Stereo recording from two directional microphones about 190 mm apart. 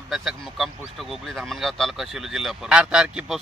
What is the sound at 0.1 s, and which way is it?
Speech, centre (ahead or behind).